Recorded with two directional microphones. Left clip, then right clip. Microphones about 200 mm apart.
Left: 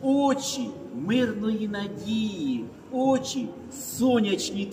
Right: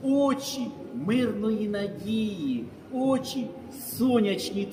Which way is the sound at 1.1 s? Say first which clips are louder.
Left 1 dB; 5° right (ahead or behind).